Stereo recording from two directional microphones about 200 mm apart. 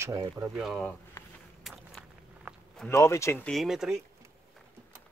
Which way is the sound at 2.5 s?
5° right (ahead or behind).